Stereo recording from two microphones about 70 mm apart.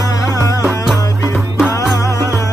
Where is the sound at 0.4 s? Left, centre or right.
Left.